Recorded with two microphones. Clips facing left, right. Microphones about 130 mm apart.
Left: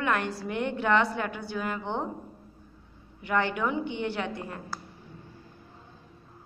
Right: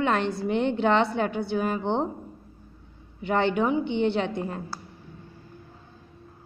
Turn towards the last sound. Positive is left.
turn(degrees=-25)  # may be behind; listen again after turning